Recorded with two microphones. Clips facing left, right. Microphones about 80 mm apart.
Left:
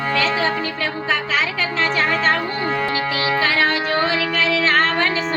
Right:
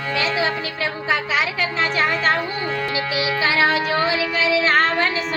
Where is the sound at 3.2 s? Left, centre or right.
Left.